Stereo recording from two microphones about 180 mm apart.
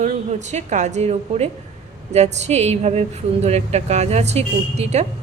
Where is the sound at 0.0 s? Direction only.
40° right (ahead or behind).